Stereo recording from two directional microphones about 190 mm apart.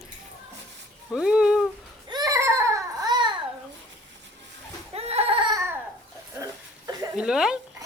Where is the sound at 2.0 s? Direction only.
20° right (ahead or behind).